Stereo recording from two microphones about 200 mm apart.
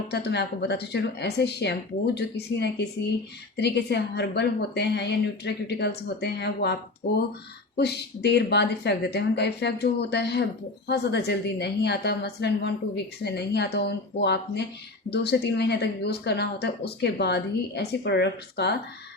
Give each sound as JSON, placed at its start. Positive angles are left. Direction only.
{"t": 0.1, "sound": "speech", "side_deg": 55}
{"t": 7.8, "sound": "speech", "side_deg": 55}